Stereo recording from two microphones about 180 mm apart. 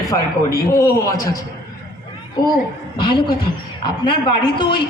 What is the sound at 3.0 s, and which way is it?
A man's voice, 25° left (ahead or behind).